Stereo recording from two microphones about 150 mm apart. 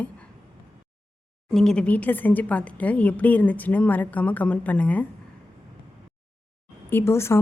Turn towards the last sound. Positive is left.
turn(degrees=15)  # may be behind; listen again after turning